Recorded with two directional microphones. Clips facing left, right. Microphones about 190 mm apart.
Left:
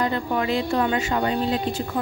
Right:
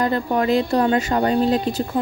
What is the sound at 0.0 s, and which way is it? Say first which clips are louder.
A woman's voice: right 4 dB; 40° right (ahead or behind).